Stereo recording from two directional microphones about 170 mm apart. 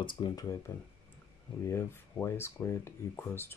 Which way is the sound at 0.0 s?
25° left (ahead or behind).